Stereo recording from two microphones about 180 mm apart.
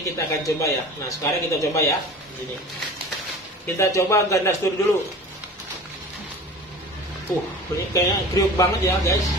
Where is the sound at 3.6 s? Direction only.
15° left (ahead or behind).